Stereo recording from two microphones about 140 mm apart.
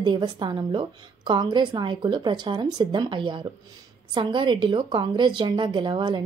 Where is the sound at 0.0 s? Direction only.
35° right (ahead or behind).